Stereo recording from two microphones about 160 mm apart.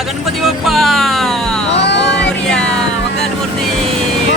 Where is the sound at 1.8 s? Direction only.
90° left.